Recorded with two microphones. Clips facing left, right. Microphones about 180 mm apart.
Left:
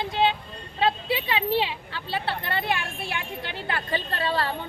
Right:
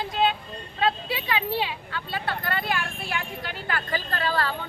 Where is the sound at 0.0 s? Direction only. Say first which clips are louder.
Left 1 dB; 25° left (ahead or behind).